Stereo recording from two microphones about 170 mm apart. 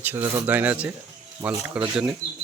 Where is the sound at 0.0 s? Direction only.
10° right (ahead or behind).